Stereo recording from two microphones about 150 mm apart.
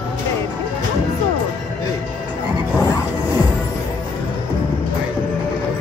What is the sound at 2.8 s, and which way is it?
Music, 20° left (ahead or behind).